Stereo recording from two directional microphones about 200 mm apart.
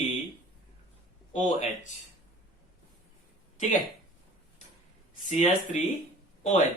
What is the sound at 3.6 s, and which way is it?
Speech, 40° left (ahead or behind).